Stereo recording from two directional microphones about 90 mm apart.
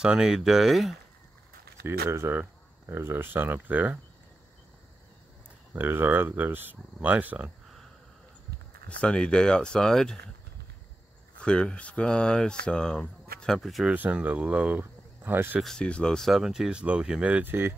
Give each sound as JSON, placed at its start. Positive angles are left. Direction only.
{"t": 0.0, "sound": "speech", "side_deg": -10}
{"t": 1.8, "sound": "speech", "side_deg": -30}
{"t": 5.7, "sound": "speech", "side_deg": -25}
{"t": 8.8, "sound": "speech", "side_deg": 10}
{"t": 11.3, "sound": "speech", "side_deg": 10}
{"t": 13.9, "sound": "speech", "side_deg": -15}
{"t": 14.8, "sound": "a sound", "side_deg": -25}
{"t": 15.6, "sound": "speech", "side_deg": 10}